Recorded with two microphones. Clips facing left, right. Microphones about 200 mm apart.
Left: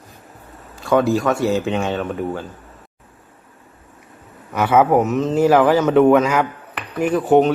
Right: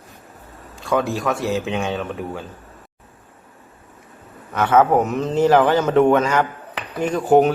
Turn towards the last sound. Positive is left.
turn(degrees=0)  # may be behind; listen again after turning